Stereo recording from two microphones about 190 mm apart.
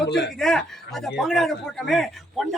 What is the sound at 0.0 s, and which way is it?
Speech, 65° left (ahead or behind).